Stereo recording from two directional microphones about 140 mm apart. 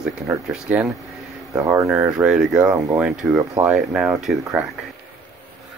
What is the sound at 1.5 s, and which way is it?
Speech, 20° right (ahead or behind).